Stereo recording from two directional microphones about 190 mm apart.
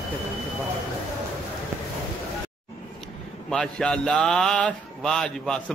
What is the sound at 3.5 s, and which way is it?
Speech, 5° left (ahead or behind).